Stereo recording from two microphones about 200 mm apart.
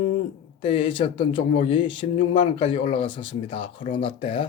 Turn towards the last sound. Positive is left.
turn(degrees=30)  # may be behind; listen again after turning